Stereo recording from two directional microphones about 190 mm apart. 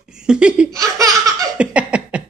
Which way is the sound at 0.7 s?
20° right (ahead or behind).